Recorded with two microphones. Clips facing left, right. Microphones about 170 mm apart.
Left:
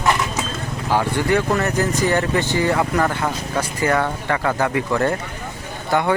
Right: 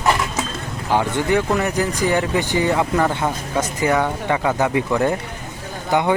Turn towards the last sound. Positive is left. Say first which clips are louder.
# right 1 dB
turn(degrees=-15)  # may be behind; listen again after turning